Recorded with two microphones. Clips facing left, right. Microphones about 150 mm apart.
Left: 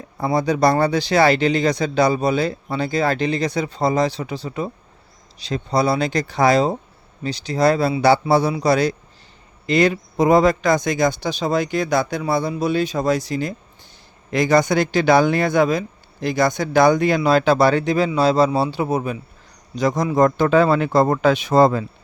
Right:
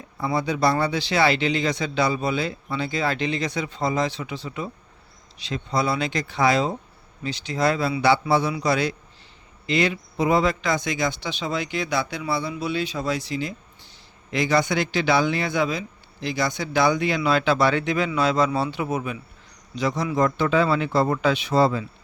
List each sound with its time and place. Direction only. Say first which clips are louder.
0.2 s speech: left 5 dB; 40° left (ahead or behind)